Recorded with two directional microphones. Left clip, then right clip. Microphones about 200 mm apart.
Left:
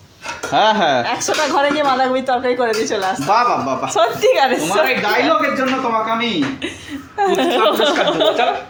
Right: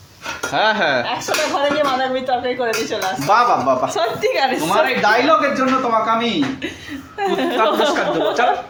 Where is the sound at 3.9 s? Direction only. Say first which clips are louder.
Left 5 dB; 10° left (ahead or behind).